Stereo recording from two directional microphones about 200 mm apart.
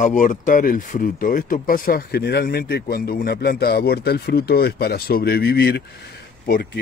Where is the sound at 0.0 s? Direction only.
40° left (ahead or behind).